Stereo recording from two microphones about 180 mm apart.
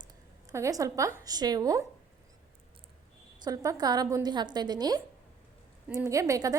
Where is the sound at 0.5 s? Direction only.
15° right (ahead or behind).